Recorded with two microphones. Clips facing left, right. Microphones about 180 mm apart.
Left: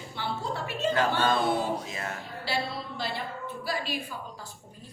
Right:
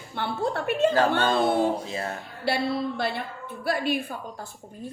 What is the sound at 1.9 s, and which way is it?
Mantra, 30° right (ahead or behind).